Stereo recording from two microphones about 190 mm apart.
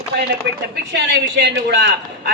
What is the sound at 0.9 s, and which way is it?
Speech, 70° right (ahead or behind).